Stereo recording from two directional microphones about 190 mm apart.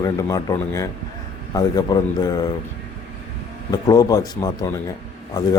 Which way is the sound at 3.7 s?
20° left (ahead or behind).